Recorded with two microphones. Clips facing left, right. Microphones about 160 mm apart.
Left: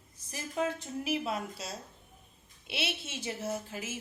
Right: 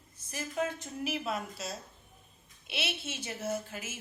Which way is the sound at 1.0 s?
25° left (ahead or behind).